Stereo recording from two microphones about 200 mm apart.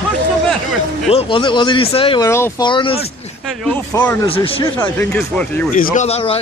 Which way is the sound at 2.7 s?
25° left (ahead or behind).